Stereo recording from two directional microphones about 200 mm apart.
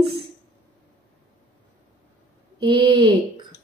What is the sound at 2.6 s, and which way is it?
Speech, 25° right (ahead or behind).